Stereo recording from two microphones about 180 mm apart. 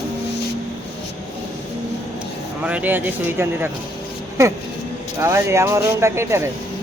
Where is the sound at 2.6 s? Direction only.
10° right (ahead or behind).